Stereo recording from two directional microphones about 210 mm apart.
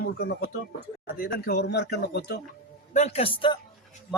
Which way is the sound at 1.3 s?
50° left (ahead or behind).